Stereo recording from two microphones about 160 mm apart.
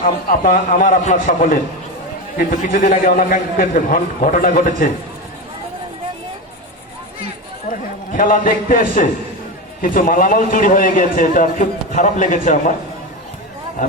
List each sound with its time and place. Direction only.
0.0 s a man's voice: 55° left (ahead or behind)
7.7 s a man's voice: 55° left (ahead or behind)